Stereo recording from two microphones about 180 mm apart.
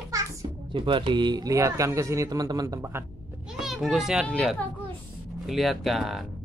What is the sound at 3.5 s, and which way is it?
A child's voice, centre (ahead or behind).